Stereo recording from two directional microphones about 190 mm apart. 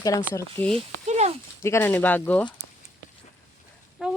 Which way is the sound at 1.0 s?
35° right (ahead or behind).